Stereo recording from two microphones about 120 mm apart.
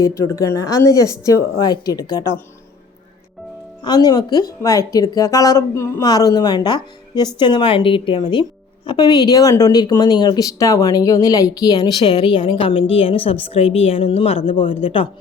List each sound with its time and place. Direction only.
0.0 s a woman's voice: 25° left (ahead or behind)
3.8 s a woman's voice: 35° left (ahead or behind)